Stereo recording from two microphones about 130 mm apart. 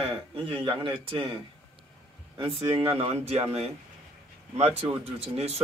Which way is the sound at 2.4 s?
40° right (ahead or behind).